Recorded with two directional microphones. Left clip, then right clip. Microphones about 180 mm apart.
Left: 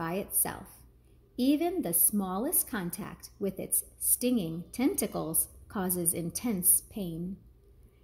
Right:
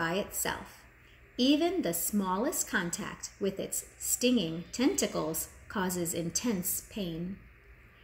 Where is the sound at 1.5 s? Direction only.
50° left (ahead or behind).